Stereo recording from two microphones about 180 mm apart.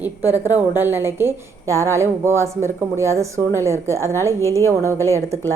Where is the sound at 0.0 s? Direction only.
10° right (ahead or behind).